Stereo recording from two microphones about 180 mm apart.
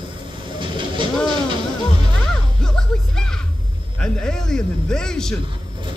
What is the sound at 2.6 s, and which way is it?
Music, 5° left (ahead or behind).